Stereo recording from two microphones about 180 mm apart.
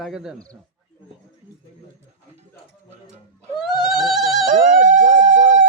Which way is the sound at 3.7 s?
Centre (ahead or behind).